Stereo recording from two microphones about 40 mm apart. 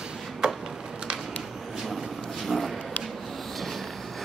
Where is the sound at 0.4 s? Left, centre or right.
Centre.